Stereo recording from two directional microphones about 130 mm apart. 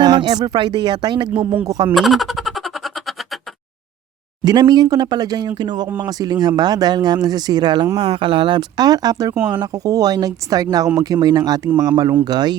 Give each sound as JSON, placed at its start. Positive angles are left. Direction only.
{"t": 0.0, "sound": "speech", "side_deg": -30}
{"t": 1.9, "sound": "a sound", "side_deg": 0}
{"t": 4.4, "sound": "speech", "side_deg": -30}